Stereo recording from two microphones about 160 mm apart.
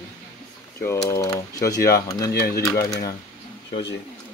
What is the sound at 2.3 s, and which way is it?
Speech, 80° left.